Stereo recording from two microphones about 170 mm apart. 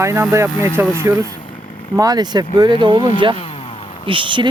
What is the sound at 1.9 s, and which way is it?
Speech, 20° right (ahead or behind).